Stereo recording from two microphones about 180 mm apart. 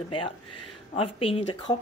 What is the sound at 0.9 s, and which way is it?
Speech, 30° left (ahead or behind).